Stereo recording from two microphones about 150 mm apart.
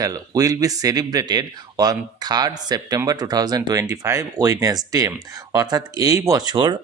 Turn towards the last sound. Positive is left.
turn(degrees=-25)  # may be behind; listen again after turning